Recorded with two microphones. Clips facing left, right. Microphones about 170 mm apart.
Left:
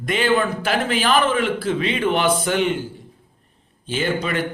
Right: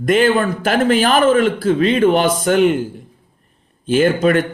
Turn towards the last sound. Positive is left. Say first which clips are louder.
# right 9 dB
turn(degrees=-50)  # may be behind; listen again after turning